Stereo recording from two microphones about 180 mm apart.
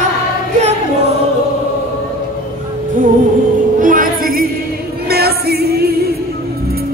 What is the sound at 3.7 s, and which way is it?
Music, 50° right (ahead or behind).